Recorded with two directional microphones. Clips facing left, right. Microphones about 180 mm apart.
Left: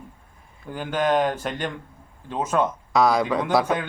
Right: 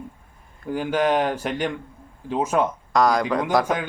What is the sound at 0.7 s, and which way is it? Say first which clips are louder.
A man's voice: right 2 dB; 10° right (ahead or behind).